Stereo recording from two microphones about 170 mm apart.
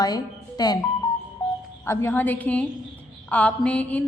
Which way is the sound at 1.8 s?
15° left (ahead or behind).